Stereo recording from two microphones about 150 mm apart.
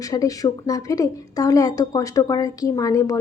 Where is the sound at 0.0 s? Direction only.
25° left (ahead or behind).